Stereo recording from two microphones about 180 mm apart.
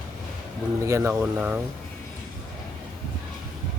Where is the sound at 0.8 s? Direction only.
15° right (ahead or behind).